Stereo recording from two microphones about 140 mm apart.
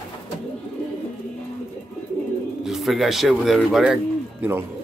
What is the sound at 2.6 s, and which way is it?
Speech, centre (ahead or behind).